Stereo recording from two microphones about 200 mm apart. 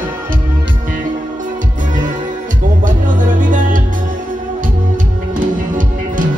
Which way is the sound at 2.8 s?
40° right (ahead or behind).